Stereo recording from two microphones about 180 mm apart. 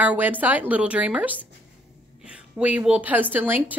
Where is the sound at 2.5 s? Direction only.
5° right (ahead or behind).